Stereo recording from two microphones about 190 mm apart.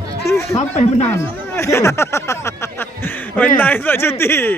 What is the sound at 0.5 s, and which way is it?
Speech, 35° left (ahead or behind).